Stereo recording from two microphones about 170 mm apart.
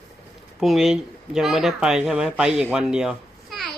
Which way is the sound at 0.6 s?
Centre (ahead or behind).